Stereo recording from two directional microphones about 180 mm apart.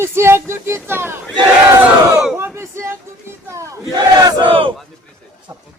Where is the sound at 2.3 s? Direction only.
15° right (ahead or behind).